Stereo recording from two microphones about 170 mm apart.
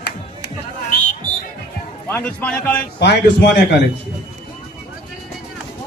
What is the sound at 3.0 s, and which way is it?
Speech, 90° left.